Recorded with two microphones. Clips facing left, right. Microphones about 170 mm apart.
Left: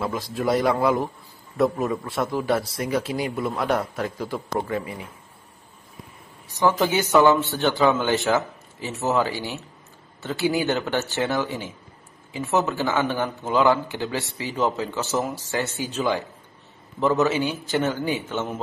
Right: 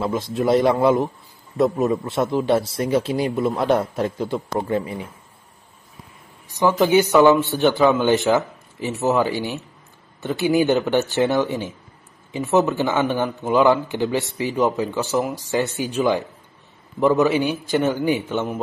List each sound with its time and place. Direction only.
0.0 s a man's voice: 25° right (ahead or behind)
6.5 s speech: 15° right (ahead or behind)